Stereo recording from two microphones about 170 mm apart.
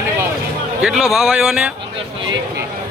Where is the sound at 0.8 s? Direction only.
Centre (ahead or behind).